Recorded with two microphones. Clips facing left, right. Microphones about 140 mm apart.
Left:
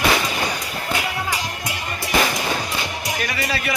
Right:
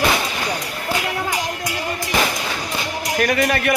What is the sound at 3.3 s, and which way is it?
Speech, 60° right (ahead or behind).